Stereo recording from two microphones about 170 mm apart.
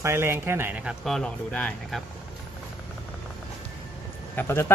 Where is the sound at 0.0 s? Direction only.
15° right (ahead or behind); by 2.0 s 5° left (ahead or behind).